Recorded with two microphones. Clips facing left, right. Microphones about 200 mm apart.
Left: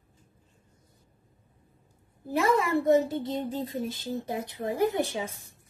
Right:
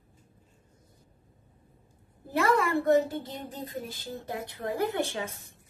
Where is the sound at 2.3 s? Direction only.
20° left (ahead or behind).